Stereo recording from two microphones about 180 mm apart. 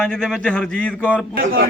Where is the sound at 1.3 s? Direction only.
55° right (ahead or behind).